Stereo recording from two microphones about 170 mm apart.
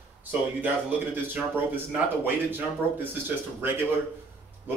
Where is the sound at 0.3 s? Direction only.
10° right (ahead or behind).